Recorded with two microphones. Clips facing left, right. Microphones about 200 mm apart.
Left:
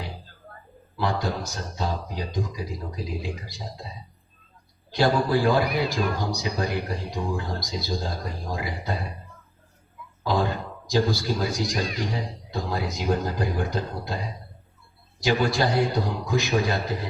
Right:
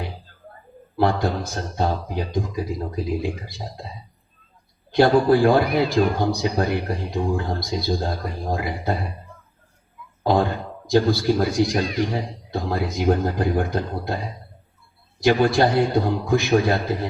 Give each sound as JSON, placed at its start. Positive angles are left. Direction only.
{"t": 0.9, "sound": "speech", "side_deg": -55}
{"t": 4.9, "sound": "speech", "side_deg": -55}
{"t": 10.8, "sound": "speech", "side_deg": -55}
{"t": 15.2, "sound": "speech", "side_deg": -55}